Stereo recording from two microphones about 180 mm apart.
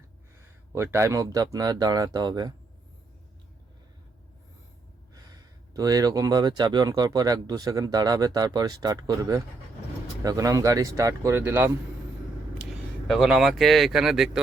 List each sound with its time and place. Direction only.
0.7 s speech: 15° right (ahead or behind)
5.1 s speech: 20° right (ahead or behind)
13.1 s speech: centre (ahead or behind)